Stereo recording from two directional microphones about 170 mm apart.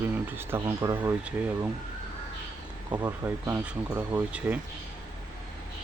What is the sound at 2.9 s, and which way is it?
Speech, 15° right (ahead or behind).